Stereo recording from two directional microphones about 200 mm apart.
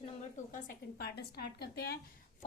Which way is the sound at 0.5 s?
50° left (ahead or behind).